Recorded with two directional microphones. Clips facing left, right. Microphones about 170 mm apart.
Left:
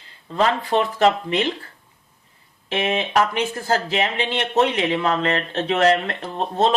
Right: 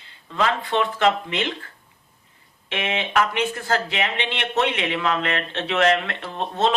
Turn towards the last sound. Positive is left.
turn(degrees=35)  # may be behind; listen again after turning